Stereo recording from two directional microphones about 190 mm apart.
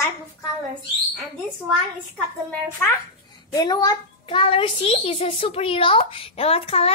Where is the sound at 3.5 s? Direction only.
20° left (ahead or behind).